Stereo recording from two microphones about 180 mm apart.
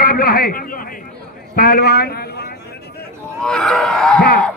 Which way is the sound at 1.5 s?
55° left (ahead or behind).